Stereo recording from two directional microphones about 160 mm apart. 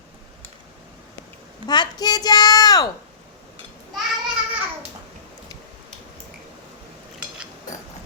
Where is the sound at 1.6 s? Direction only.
25° left (ahead or behind).